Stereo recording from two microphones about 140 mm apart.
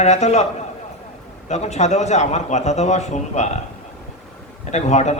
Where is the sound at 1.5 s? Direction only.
55° left (ahead or behind).